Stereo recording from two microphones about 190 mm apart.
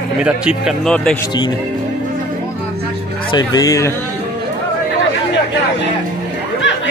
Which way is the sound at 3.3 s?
20° left (ahead or behind).